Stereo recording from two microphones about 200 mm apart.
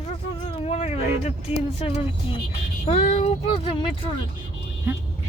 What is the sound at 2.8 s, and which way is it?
Speech, 30° left (ahead or behind).